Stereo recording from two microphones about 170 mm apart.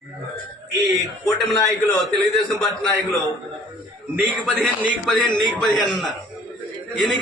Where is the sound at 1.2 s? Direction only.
20° left (ahead or behind).